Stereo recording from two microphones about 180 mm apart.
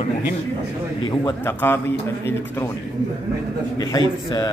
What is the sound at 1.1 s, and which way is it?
Speech, 25° left (ahead or behind).